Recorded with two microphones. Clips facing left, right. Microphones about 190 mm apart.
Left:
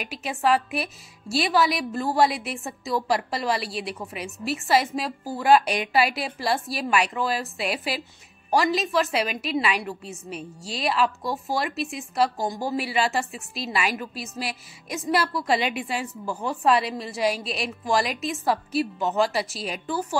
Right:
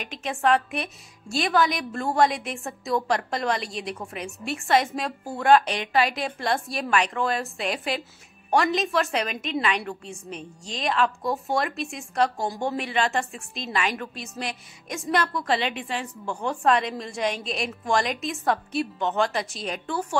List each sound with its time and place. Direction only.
0.0 s a woman's voice: 5° left (ahead or behind)